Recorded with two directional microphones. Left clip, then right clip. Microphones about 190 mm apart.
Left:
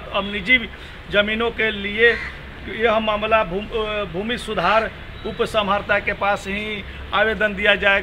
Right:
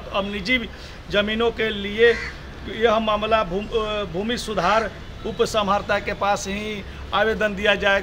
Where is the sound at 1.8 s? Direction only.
75° right (ahead or behind).